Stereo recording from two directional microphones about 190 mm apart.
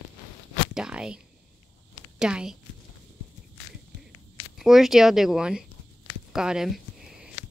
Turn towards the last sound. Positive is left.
turn(degrees=-5)  # may be behind; listen again after turning